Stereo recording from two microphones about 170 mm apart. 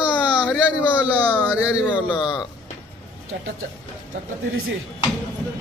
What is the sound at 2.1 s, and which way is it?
Speech, 25° left (ahead or behind).